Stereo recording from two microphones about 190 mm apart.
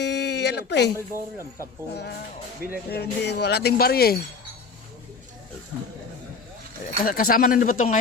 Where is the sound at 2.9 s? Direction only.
60° left (ahead or behind).